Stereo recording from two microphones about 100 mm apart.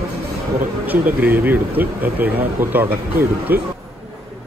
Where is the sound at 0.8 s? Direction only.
15° right (ahead or behind).